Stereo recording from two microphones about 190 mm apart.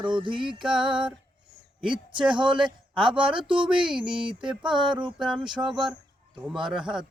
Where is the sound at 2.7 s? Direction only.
25° right (ahead or behind).